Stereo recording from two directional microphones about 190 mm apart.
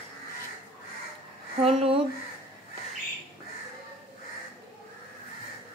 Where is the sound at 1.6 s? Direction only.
35° right (ahead or behind).